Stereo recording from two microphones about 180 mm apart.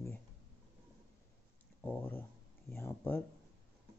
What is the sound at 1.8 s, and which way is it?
Speech, 10° left (ahead or behind).